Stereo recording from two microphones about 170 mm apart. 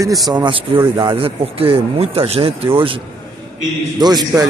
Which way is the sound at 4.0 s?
25° right (ahead or behind).